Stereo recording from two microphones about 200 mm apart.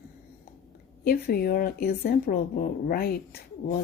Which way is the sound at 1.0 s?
50° left (ahead or behind).